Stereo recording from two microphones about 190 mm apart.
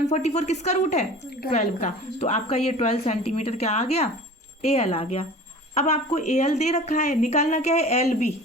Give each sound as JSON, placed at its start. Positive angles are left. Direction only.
{"t": 0.1, "sound": "a woman's voice", "side_deg": 35}